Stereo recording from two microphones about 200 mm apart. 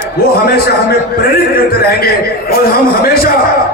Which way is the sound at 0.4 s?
50° left (ahead or behind).